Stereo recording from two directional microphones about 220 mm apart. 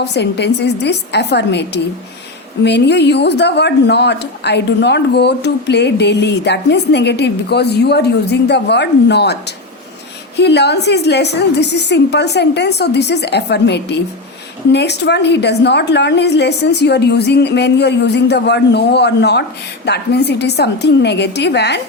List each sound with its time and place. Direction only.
0.0 s a woman's voice: 50° left (ahead or behind)